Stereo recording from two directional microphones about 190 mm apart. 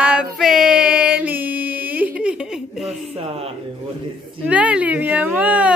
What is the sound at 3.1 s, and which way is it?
Speech, 30° right (ahead or behind).